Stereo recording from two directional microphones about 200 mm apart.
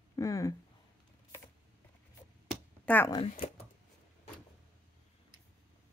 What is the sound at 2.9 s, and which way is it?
Speech, 10° left (ahead or behind).